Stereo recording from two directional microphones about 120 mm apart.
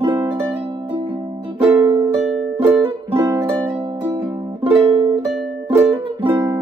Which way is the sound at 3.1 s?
25° right (ahead or behind).